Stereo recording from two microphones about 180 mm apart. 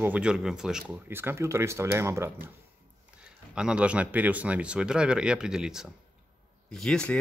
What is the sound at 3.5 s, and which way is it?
Speech, 5° right (ahead or behind).